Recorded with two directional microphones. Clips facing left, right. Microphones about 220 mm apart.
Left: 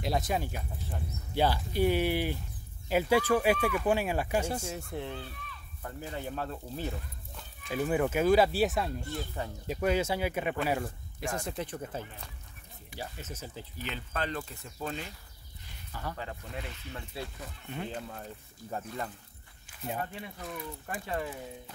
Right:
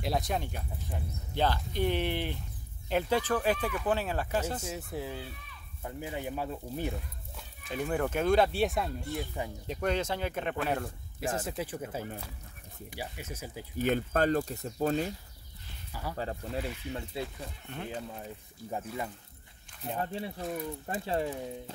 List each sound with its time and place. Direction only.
0.0 s speech: centre (ahead or behind)
4.6 s speech: 5° right (ahead or behind)
7.6 s speech: 5° left (ahead or behind)
13.7 s speech: 50° right (ahead or behind)
15.9 s speech: 10° right (ahead or behind)
16.2 s speech: 35° right (ahead or behind)
17.7 s speech: 5° left (ahead or behind)
18.1 s speech: 15° right (ahead or behind)
20.0 s speech: 30° right (ahead or behind)